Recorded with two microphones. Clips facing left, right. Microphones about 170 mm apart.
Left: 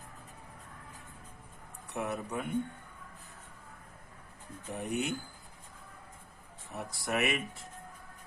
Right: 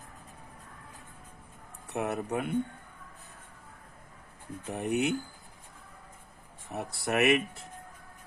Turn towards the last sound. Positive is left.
turn(degrees=-65)  # may be behind; listen again after turning